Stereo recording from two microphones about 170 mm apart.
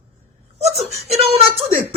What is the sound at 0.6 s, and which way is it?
Speech, 40° right (ahead or behind).